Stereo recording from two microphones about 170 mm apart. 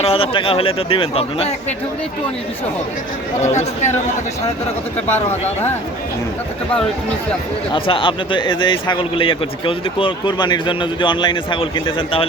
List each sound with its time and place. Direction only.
0.0 s a man's voice: 35° left (ahead or behind)
3.4 s speech: 40° left (ahead or behind)
5.0 s speech: 10° left (ahead or behind)
7.7 s speech: 30° left (ahead or behind)